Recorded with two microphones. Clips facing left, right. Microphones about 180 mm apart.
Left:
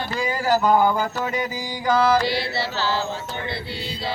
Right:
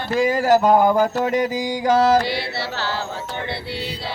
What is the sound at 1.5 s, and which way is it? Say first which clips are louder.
Mantra: right 7 dB; 90° right.